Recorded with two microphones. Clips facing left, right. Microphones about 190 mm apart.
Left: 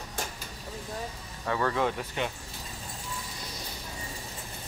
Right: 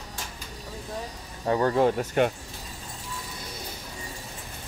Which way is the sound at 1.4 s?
35° right (ahead or behind).